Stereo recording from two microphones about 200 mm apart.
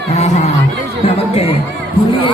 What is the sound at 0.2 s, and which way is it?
Chatter, 35° left (ahead or behind).